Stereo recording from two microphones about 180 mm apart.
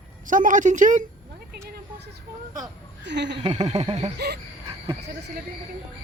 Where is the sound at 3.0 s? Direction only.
75° right (ahead or behind).